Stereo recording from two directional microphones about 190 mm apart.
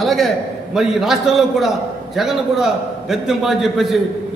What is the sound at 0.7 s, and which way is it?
A man's voice, centre (ahead or behind).